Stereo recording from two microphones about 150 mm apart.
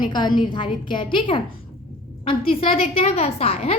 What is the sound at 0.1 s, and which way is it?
A woman's voice, 30° left (ahead or behind).